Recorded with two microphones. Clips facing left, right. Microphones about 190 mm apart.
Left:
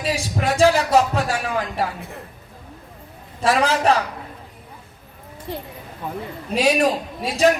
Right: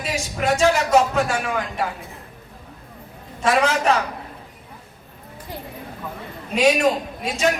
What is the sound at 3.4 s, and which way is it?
Speech, 35° left (ahead or behind).